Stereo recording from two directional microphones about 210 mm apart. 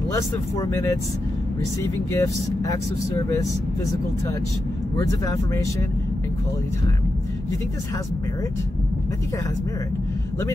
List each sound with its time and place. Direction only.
0.1 s speech: 10° left (ahead or behind)
2.1 s speech: 15° left (ahead or behind)
4.9 s speech: 15° left (ahead or behind)